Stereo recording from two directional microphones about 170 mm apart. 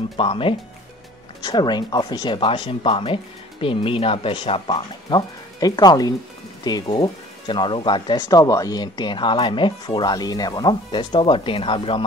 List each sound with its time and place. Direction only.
0.2 s speech: 30° left (ahead or behind)